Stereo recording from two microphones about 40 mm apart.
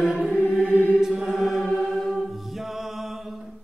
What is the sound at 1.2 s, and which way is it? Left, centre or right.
Music, centre.